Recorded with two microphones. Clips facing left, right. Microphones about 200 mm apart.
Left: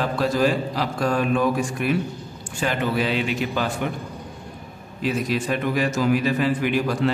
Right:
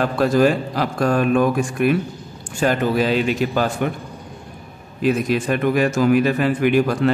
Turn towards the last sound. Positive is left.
turn(degrees=-55)  # may be behind; listen again after turning